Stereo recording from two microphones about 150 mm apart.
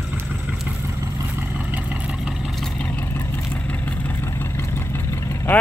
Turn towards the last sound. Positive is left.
turn(degrees=15)  # may be behind; listen again after turning